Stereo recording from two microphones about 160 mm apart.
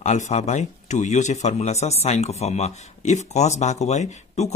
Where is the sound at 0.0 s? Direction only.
45° left (ahead or behind).